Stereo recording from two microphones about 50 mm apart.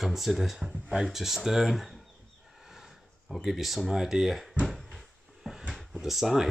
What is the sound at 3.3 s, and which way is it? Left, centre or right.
Speech, centre.